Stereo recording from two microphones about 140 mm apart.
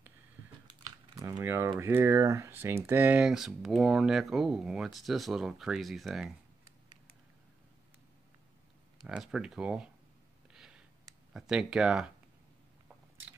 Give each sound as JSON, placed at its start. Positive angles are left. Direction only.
{"t": 1.1, "sound": "speech", "side_deg": -25}
{"t": 9.0, "sound": "speech", "side_deg": -5}
{"t": 10.5, "sound": "a sound", "side_deg": -5}
{"t": 11.3, "sound": "speech", "side_deg": -5}